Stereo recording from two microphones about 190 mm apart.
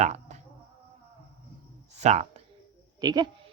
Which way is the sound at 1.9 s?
35° right (ahead or behind).